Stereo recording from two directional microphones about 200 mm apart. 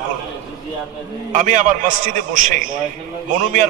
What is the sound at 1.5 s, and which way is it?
A man's voice, 40° right (ahead or behind).